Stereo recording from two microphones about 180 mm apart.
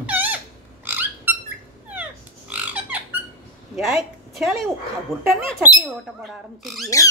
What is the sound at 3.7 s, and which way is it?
Speech, centre (ahead or behind).